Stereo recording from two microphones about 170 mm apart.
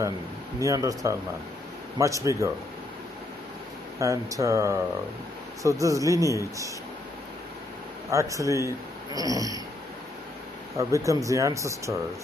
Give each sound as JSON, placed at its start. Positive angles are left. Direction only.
{"t": 0.6, "sound": "speech", "side_deg": -20}
{"t": 4.0, "sound": "speech", "side_deg": -20}
{"t": 8.1, "sound": "speech", "side_deg": -20}
{"t": 11.1, "sound": "speech", "side_deg": -20}